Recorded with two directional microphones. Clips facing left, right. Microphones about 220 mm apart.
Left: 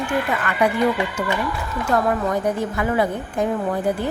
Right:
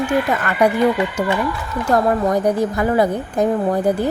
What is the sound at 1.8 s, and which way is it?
A woman's voice, 35° right (ahead or behind).